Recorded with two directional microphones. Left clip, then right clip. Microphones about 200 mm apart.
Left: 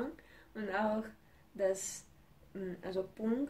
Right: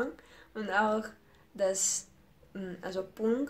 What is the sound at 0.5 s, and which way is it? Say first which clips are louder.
Speech: right 7 dB; centre (ahead or behind).